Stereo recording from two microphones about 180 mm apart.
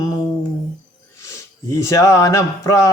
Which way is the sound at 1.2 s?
15° left (ahead or behind).